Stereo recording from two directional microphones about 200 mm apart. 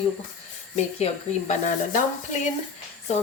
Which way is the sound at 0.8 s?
35° left (ahead or behind).